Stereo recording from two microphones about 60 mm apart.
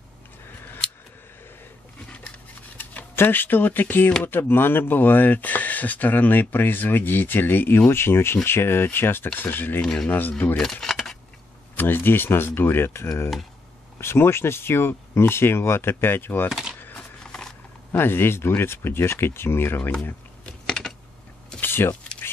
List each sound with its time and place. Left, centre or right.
2.8 s speech: left
9.8 s speech: centre
10.0 s speech: left
10.6 s a sound: centre
11.7 s speech: left
16.4 s speech: centre
17.2 s a sound: centre
17.9 s speech: left
20.4 s typing: centre
21.5 s a sound: left